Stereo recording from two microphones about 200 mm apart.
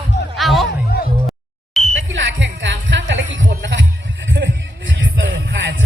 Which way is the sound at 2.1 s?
70° right (ahead or behind).